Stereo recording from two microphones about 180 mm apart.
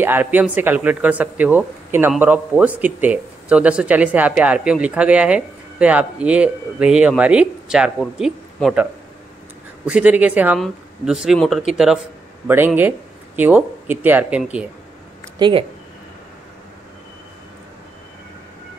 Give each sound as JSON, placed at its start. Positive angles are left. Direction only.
{"t": 0.0, "sound": "speech", "side_deg": -10}
{"t": 9.8, "sound": "speech", "side_deg": -5}
{"t": 15.3, "sound": "speech", "side_deg": -25}